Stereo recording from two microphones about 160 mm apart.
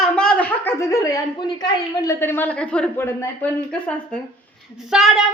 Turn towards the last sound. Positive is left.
turn(degrees=-5)  # may be behind; listen again after turning